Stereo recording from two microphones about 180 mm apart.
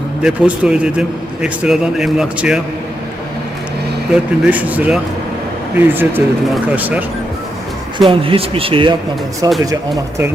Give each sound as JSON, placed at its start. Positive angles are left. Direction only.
{"t": 0.2, "sound": "a man's voice", "side_deg": -5}
{"t": 4.1, "sound": "speech", "side_deg": -10}
{"t": 8.1, "sound": "speech", "side_deg": -30}